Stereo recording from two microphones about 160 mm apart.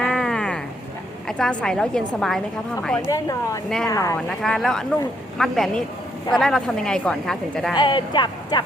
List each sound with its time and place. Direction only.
0.0 s a sound: 5° left (ahead or behind)
1.3 s a woman's voice: 5° left (ahead or behind)
3.1 s speech: 20° left (ahead or behind)
4.3 s a woman's voice: centre (ahead or behind)
7.8 s speech: 30° left (ahead or behind)